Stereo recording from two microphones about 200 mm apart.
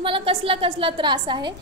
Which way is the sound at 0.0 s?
25° right (ahead or behind).